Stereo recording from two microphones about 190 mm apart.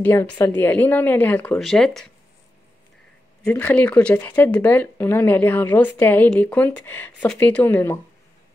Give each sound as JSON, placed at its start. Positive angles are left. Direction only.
{"t": 0.0, "sound": "a woman's voice", "side_deg": 10}
{"t": 3.4, "sound": "a woman's voice", "side_deg": 10}